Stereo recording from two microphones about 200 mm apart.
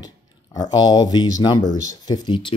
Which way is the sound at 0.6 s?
20° left (ahead or behind).